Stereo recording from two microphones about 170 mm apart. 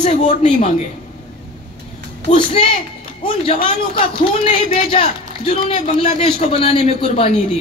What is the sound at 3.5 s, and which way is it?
A woman's voice, 35° left (ahead or behind).